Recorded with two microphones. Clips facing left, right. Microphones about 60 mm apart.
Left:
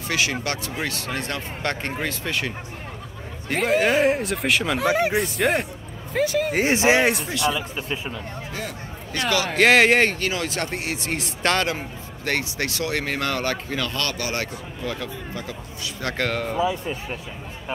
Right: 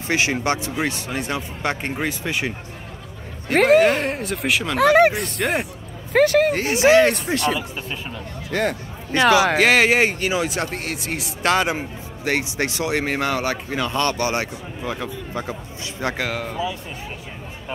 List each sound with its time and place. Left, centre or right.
0.1 s speech: right
3.5 s speech: right
3.8 s speech: centre
4.7 s speech: right
5.1 s speech: centre
6.1 s speech: right
6.6 s speech: left
7.3 s speech: right
8.5 s speech: right
9.6 s speech: centre
10.7 s speech: centre
12.3 s speech: centre
16.2 s speech: centre